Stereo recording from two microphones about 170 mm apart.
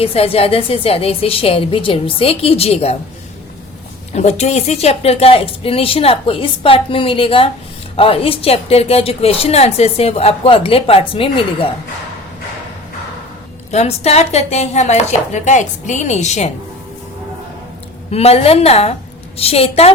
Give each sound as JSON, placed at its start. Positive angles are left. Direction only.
{"t": 0.0, "sound": "a woman's voice", "side_deg": 35}
{"t": 4.1, "sound": "a woman's voice", "side_deg": 40}
{"t": 13.7, "sound": "a woman's voice", "side_deg": 40}
{"t": 18.1, "sound": "a woman's voice", "side_deg": 35}